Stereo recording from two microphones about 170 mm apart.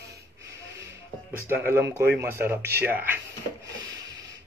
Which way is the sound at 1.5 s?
15° right (ahead or behind).